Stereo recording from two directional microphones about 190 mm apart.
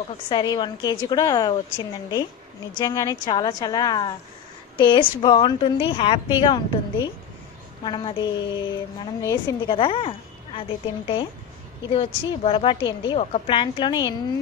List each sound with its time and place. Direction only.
0.3 s a woman's voice: 25° left (ahead or behind)
11.9 s a woman's voice: 30° left (ahead or behind)